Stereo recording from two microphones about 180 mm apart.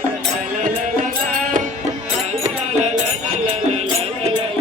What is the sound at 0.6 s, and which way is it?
Music, 45° right (ahead or behind).